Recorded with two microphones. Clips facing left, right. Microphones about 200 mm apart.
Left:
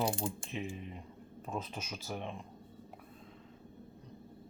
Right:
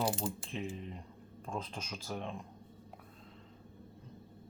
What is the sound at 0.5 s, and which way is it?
Speech, 10° left (ahead or behind).